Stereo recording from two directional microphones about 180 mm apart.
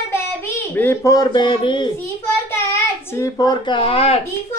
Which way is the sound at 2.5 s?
15° left (ahead or behind).